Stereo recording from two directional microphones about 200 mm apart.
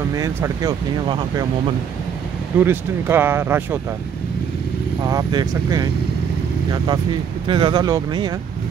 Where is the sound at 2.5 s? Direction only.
10° right (ahead or behind).